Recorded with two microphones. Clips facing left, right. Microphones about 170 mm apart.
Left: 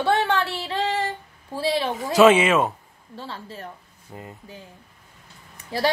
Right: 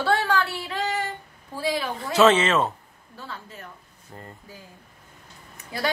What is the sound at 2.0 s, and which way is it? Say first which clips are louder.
Speech: left 3 dB; 10° left (ahead or behind).